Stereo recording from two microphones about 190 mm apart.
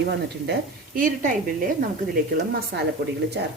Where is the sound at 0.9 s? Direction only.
45° right (ahead or behind).